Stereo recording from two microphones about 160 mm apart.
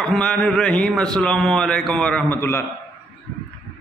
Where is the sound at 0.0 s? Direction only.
5° left (ahead or behind).